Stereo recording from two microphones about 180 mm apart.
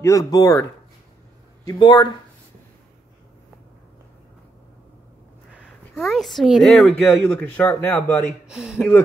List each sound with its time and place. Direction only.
0.0 s speech: 20° left (ahead or behind)
5.9 s a man's voice: centre (ahead or behind)
8.5 s speech: 5° right (ahead or behind)
8.7 s a man's voice: 10° left (ahead or behind)